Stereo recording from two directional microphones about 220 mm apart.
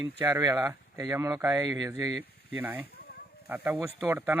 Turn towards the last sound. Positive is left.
turn(degrees=-10)  # may be behind; listen again after turning